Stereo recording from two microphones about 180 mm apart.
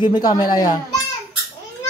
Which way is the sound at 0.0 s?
25° left (ahead or behind).